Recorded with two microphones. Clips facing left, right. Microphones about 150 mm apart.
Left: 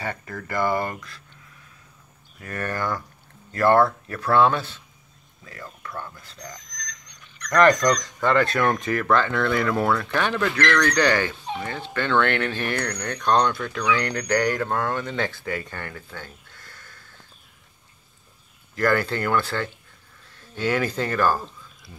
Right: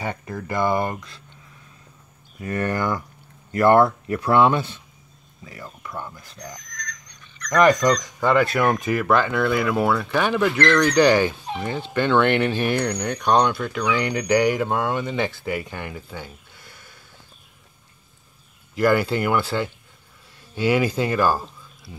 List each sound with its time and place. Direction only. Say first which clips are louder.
0.0 s speech: right 3 dB; 15° right (ahead or behind)
2.4 s speech: right 4 dB; 20° right (ahead or behind)
18.8 s speech: right 3 dB; 10° right (ahead or behind)